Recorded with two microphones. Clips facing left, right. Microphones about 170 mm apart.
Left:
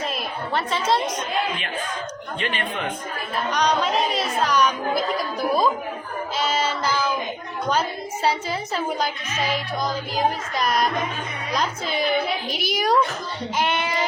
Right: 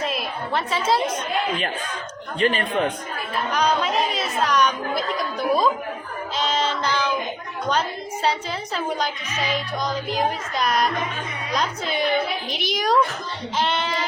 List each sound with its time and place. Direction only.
0.0 s a sound: centre (ahead or behind)
0.9 s speech: 5° right (ahead or behind)
2.4 s speech: 40° right (ahead or behind)
3.5 s speech: centre (ahead or behind)
6.3 s child singing: 5° left (ahead or behind)
7.7 s a woman's voice: 5° left (ahead or behind)